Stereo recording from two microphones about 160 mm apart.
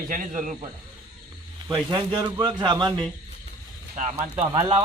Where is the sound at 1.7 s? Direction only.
30° right (ahead or behind).